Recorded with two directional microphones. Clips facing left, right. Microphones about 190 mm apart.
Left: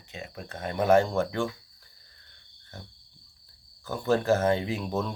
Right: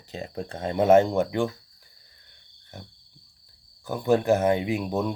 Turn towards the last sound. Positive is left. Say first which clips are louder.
# right 4 dB
turn(degrees=-15)  # may be behind; listen again after turning